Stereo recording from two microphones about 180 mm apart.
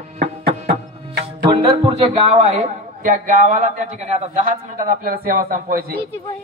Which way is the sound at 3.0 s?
45° right (ahead or behind).